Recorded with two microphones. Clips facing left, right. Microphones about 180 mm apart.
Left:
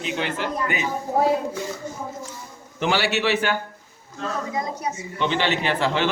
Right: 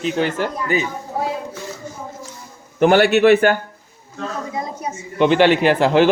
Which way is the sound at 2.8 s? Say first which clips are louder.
Right 10 dB; 55° right (ahead or behind).